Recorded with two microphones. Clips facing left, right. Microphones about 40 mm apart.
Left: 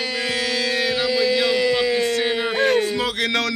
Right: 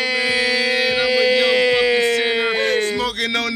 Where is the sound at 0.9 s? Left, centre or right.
Right.